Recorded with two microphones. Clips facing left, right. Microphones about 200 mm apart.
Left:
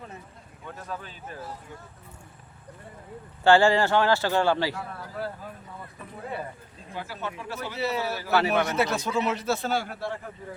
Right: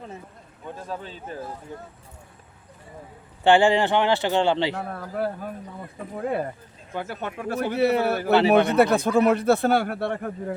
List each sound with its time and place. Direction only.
0.8 s speech: 30° right (ahead or behind)
3.4 s speech: 15° right (ahead or behind)
4.7 s a man's voice: 55° right (ahead or behind)
6.9 s a man's voice: 55° right (ahead or behind)